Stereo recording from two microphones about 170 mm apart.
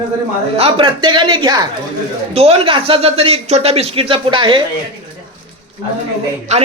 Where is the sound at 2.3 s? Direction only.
35° right (ahead or behind).